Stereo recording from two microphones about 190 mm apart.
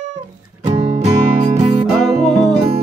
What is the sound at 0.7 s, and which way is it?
Music, 35° right (ahead or behind).